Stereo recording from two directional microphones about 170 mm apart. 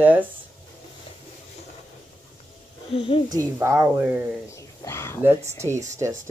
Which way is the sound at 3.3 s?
15° right (ahead or behind).